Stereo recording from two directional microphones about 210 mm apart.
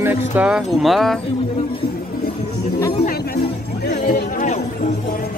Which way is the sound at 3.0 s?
45° left (ahead or behind).